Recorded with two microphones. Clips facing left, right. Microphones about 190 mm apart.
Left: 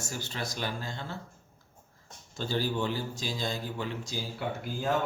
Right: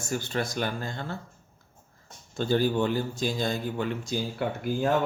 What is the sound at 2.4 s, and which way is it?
Speech, 55° right (ahead or behind).